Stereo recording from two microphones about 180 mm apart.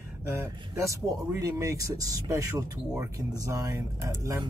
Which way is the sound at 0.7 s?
15° right (ahead or behind).